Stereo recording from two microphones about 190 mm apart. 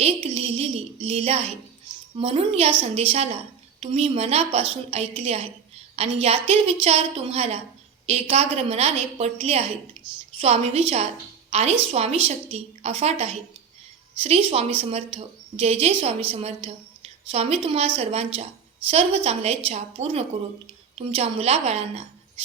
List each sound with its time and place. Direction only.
0.0 s a woman's voice: 30° right (ahead or behind)